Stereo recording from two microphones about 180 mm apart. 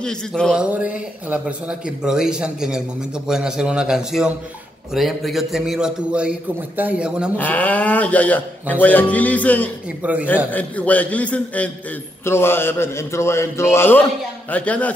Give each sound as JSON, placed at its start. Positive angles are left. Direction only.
{"t": 0.0, "sound": "a man's voice", "side_deg": 5}
{"t": 0.7, "sound": "a man's voice", "side_deg": -5}
{"t": 7.3, "sound": "speech", "side_deg": 10}